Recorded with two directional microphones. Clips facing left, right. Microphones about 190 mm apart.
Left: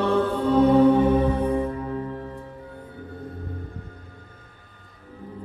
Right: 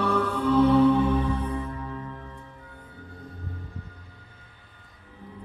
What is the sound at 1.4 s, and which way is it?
Music, 30° left (ahead or behind).